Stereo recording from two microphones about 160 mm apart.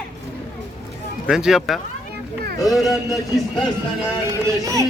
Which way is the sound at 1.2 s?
5° right (ahead or behind).